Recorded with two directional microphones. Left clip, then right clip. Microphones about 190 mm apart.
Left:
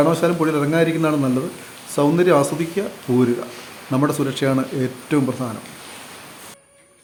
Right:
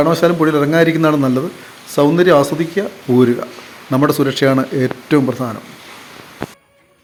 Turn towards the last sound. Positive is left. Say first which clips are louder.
# right 6 dB
turn(degrees=-15)  # may be behind; listen again after turning